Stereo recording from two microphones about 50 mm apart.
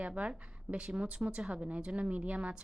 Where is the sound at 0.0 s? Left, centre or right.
Right.